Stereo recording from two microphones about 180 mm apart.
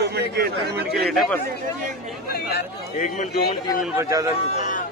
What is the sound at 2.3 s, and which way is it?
Speech, 60° left (ahead or behind).